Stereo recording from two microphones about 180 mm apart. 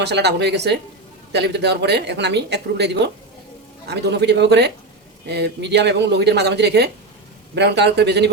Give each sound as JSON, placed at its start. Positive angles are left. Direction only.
{"t": 0.0, "sound": "speech", "side_deg": -65}